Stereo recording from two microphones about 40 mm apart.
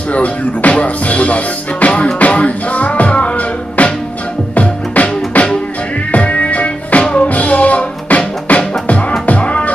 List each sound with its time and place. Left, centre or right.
0.1 s music: left